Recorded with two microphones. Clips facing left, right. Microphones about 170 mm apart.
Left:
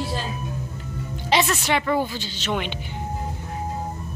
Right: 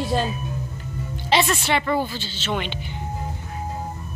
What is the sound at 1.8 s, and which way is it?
Speech, 10° left (ahead or behind).